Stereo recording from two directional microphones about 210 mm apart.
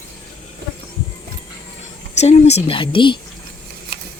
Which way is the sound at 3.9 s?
50° right (ahead or behind).